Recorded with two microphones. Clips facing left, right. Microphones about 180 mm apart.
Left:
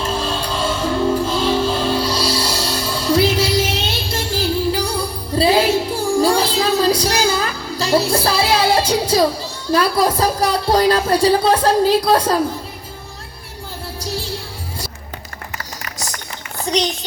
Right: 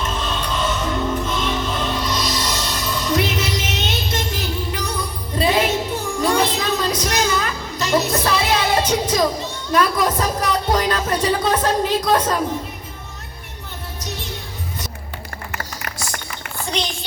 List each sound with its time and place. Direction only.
0.0 s music: 30° left (ahead or behind)
14.0 s music: 30° left (ahead or behind)